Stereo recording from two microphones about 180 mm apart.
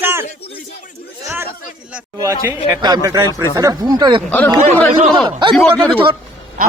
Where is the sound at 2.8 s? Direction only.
20° right (ahead or behind).